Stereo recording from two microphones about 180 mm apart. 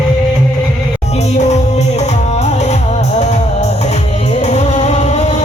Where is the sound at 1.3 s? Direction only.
40° left (ahead or behind).